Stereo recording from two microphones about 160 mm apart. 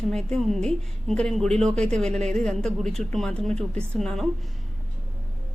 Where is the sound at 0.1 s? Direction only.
5° left (ahead or behind).